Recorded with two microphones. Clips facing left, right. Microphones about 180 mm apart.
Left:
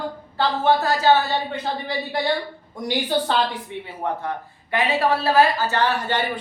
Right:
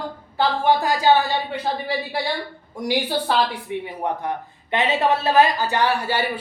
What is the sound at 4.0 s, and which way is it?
Speech, 20° right (ahead or behind).